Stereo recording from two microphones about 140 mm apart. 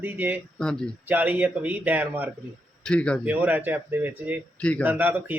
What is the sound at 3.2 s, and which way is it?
Speech, 10° right (ahead or behind).